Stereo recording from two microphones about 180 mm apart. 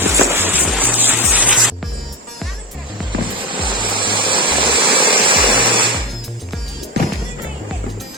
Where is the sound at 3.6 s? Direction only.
25° right (ahead or behind).